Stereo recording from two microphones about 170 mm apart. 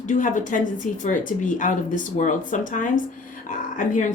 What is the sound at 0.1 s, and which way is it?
Speech, 50° left (ahead or behind).